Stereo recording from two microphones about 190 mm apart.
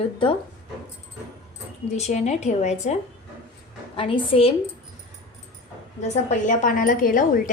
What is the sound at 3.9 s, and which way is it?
Speech, 30° left (ahead or behind).